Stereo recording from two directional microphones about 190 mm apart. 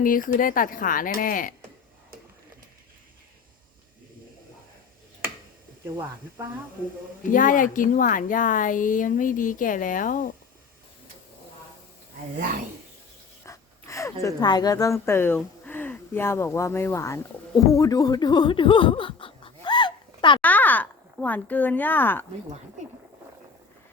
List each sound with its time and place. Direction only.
0.0 s speech: 45° left (ahead or behind)
7.3 s speech: 45° left (ahead or behind)
13.4 s speech: 15° left (ahead or behind)
20.4 s speech: 10° left (ahead or behind)